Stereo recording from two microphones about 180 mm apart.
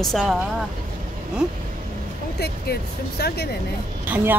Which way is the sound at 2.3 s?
60° left (ahead or behind).